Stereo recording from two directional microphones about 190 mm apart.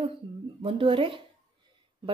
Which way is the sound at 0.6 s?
30° right (ahead or behind).